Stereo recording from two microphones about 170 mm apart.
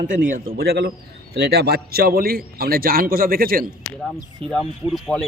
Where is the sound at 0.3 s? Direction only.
55° right (ahead or behind).